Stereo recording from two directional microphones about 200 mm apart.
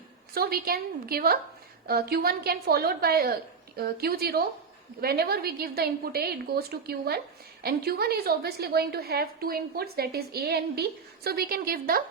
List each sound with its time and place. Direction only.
0.3 s a woman's voice: 50° right (ahead or behind)